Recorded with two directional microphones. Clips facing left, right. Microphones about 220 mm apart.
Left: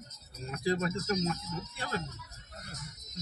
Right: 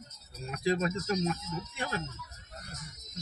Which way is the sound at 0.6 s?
15° right (ahead or behind).